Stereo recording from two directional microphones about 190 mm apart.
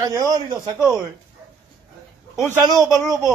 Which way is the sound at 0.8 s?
5° right (ahead or behind).